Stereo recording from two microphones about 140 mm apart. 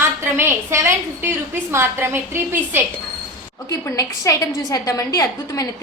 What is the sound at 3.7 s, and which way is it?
A woman's voice, 25° left (ahead or behind).